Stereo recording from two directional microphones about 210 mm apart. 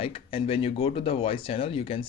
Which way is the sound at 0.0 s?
25° left (ahead or behind).